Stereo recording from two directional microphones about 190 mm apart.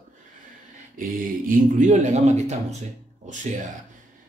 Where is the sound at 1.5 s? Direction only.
40° right (ahead or behind).